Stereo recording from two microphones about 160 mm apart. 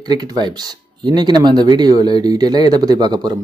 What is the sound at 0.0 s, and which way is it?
Speech, 25° right (ahead or behind).